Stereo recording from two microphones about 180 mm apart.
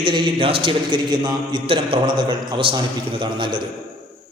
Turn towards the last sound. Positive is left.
turn(degrees=-30)  # may be behind; listen again after turning